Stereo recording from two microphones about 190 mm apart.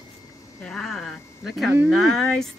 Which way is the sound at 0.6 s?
5° left (ahead or behind).